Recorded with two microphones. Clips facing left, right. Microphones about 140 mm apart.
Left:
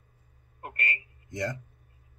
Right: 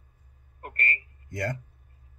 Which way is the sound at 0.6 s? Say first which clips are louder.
Right 2 dB; 20° left (ahead or behind).